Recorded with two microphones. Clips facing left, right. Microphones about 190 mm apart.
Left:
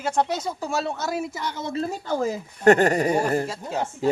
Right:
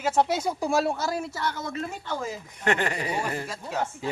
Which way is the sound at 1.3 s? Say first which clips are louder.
Left 3 dB; 20° left (ahead or behind).